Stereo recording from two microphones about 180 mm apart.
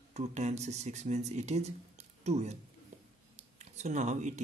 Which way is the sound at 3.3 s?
40° right (ahead or behind).